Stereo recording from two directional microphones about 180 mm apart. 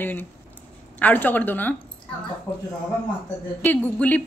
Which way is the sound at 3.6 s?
10° left (ahead or behind).